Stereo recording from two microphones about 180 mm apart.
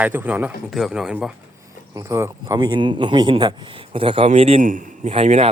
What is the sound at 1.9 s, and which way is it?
A man's voice, 15° right (ahead or behind).